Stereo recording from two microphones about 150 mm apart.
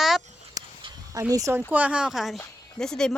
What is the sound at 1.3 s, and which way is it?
Speech, 20° right (ahead or behind).